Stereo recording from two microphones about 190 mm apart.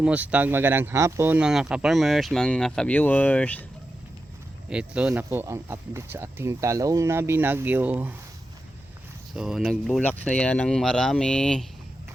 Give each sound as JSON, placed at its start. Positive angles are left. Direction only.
{"t": 0.0, "sound": "speech", "side_deg": -5}
{"t": 4.7, "sound": "speech", "side_deg": -5}
{"t": 9.3, "sound": "speech", "side_deg": -5}